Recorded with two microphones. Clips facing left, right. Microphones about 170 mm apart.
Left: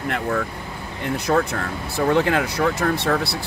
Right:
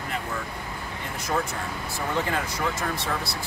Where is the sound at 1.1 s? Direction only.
65° left (ahead or behind).